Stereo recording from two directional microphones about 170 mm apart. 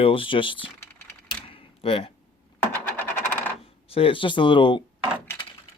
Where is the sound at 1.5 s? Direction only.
35° left (ahead or behind).